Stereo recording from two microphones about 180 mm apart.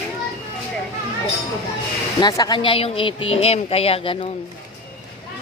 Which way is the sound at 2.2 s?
20° left (ahead or behind).